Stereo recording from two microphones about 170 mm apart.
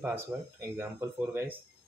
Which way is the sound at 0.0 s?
10° right (ahead or behind).